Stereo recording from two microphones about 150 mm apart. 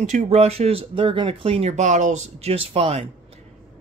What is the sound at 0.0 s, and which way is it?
Speech, 55° right (ahead or behind).